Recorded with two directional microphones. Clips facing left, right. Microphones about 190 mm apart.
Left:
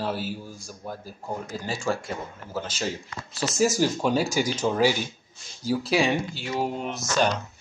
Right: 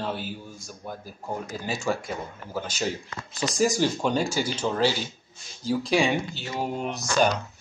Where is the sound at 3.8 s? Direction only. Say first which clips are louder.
Left 1 dB; 5° left (ahead or behind).